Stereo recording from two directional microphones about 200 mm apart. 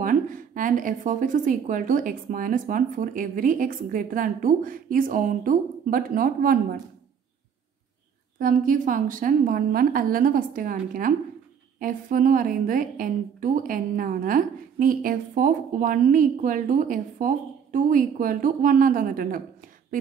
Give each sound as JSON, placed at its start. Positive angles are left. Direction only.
{"t": 0.0, "sound": "a woman's voice", "side_deg": -40}
{"t": 8.4, "sound": "a woman's voice", "side_deg": -40}